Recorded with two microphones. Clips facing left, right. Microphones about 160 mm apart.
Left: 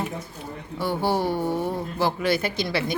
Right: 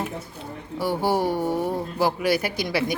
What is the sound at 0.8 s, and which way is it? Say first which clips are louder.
Speech: right 1 dB; 10° right (ahead or behind).